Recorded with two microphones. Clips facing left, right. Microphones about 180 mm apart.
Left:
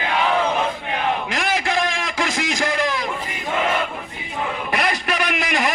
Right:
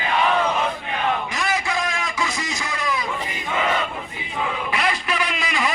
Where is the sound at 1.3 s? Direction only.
90° left.